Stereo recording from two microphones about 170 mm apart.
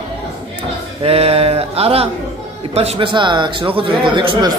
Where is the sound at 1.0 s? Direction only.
35° right (ahead or behind).